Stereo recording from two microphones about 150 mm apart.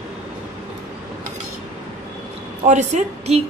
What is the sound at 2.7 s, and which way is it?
Speech, 50° right (ahead or behind).